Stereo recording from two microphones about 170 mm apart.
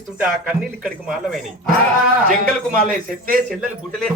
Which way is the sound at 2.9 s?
55° right (ahead or behind).